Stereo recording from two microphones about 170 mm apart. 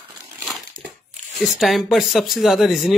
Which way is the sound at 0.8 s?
55° right (ahead or behind).